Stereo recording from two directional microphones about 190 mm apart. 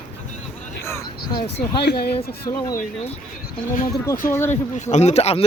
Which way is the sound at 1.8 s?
60° left (ahead or behind).